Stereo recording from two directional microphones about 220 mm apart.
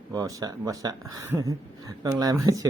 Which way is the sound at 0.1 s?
15° right (ahead or behind).